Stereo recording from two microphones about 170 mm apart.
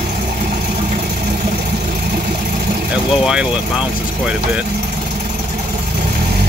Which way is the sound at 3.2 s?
5° right (ahead or behind).